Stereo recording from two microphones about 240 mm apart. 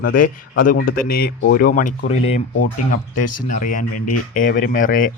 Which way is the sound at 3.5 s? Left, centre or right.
Left.